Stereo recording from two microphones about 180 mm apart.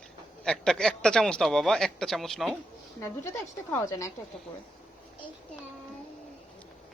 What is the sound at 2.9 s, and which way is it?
Speech, 15° left (ahead or behind).